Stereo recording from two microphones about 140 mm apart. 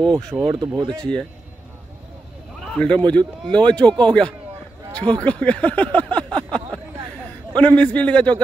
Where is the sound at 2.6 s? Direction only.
5° left (ahead or behind).